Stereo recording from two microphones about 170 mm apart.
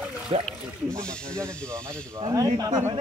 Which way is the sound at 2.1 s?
20° right (ahead or behind).